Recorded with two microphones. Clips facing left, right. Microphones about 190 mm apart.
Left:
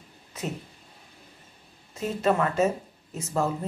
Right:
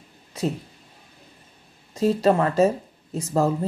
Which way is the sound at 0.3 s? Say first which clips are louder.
Right 8 dB; 30° right (ahead or behind).